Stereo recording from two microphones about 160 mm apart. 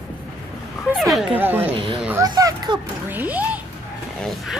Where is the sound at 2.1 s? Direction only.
25° right (ahead or behind).